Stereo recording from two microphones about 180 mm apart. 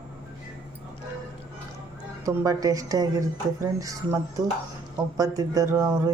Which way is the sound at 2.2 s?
15° right (ahead or behind).